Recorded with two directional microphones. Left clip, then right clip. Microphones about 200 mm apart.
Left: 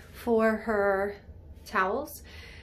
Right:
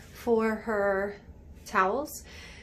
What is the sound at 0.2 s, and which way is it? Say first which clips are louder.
A woman's voice: left 1 dB; centre (ahead or behind).